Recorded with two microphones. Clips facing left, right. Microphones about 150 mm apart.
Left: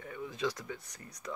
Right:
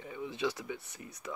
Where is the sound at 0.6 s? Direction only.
20° right (ahead or behind).